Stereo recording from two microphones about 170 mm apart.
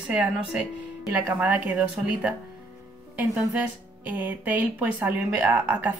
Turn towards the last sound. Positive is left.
turn(degrees=-10)  # may be behind; listen again after turning